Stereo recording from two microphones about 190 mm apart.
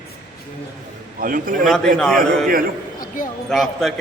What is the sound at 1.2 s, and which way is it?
Speech, 45° right (ahead or behind).